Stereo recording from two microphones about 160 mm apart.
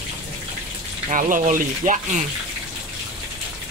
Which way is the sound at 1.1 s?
55° right (ahead or behind).